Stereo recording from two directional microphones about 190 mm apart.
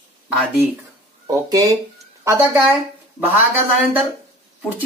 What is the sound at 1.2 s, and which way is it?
Speech, 20° right (ahead or behind).